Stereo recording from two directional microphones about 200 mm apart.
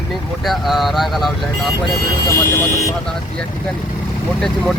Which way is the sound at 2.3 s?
15° left (ahead or behind).